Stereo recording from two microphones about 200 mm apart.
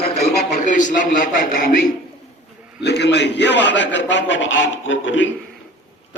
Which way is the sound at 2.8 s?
55° left (ahead or behind).